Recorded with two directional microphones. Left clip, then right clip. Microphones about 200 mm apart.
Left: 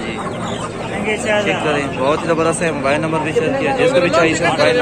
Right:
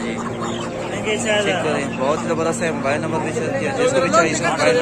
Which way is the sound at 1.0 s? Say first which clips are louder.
Left 3 dB; 55° right (ahead or behind).